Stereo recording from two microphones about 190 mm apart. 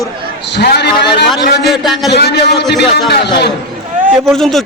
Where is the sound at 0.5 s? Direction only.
60° left (ahead or behind).